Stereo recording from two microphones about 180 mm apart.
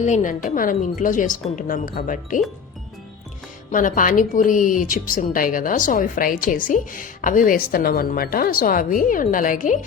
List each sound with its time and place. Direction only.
0.0 s a woman's voice: 45° left (ahead or behind)
3.7 s a woman's voice: 45° left (ahead or behind)